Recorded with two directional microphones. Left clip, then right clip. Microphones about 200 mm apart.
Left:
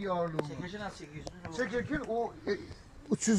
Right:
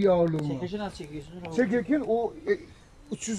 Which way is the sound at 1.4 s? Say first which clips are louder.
Right 8 dB; 45° right (ahead or behind).